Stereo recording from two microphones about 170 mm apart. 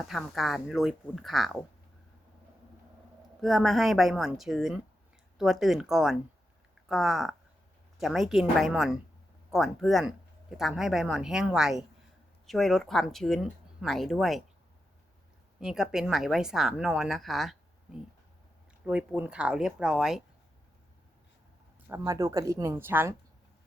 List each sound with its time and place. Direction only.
0.1 s speech: centre (ahead or behind)
3.4 s speech: centre (ahead or behind)
15.6 s speech: 5° right (ahead or behind)
21.8 s speech: 15° right (ahead or behind)